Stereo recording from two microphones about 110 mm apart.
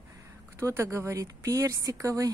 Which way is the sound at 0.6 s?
25° right (ahead or behind).